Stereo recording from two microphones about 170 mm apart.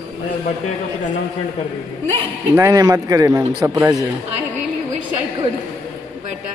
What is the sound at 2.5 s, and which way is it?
Speech, 20° right (ahead or behind).